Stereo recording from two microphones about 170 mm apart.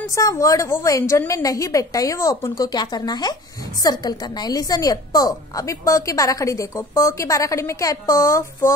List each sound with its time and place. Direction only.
0.1 s a woman's voice: 20° left (ahead or behind)